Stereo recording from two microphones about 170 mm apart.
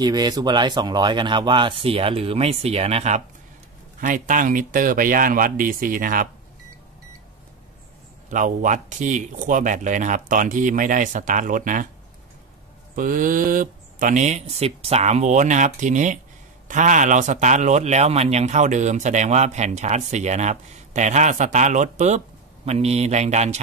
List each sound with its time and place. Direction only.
0.0 s speech: 25° right (ahead or behind); by 3.2 s 40° right (ahead or behind)
4.0 s speech: 50° right (ahead or behind)
8.3 s a man's voice: 50° right (ahead or behind)
12.9 s a man's voice: 55° right (ahead or behind)